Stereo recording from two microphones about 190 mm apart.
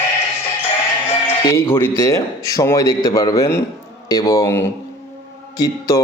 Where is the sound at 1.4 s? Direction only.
15° left (ahead or behind).